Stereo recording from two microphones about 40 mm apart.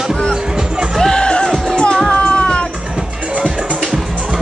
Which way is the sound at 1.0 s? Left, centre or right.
Centre.